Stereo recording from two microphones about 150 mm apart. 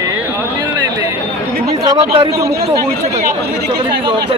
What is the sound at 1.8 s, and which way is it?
Speech, 30° right (ahead or behind).